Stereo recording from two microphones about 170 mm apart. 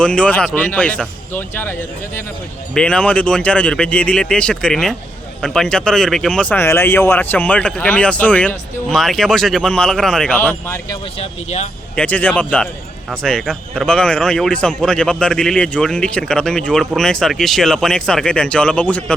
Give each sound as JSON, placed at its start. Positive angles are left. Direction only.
{"t": 0.0, "sound": "speech", "side_deg": 5}
{"t": 2.7, "sound": "a man's voice", "side_deg": 5}
{"t": 11.2, "sound": "speech", "side_deg": 40}
{"t": 11.9, "sound": "a man's voice", "side_deg": 10}